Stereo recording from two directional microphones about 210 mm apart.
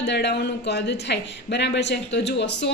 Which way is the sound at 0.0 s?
55° left (ahead or behind).